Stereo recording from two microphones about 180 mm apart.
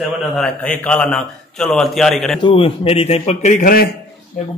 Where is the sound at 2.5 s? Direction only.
30° left (ahead or behind); by 3.9 s 50° left (ahead or behind).